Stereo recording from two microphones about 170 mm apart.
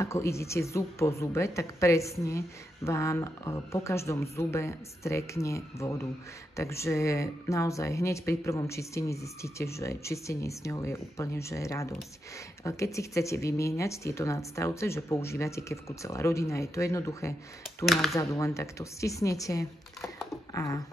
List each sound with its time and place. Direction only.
0.0 s a woman's voice: 15° left (ahead or behind)
17.8 s speech: centre (ahead or behind)
18.1 s a woman's voice: 15° left (ahead or behind)
20.5 s a sound: 20° left (ahead or behind)